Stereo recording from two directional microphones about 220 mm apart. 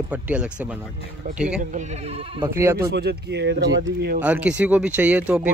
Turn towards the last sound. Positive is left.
turn(degrees=-5)  # may be behind; listen again after turning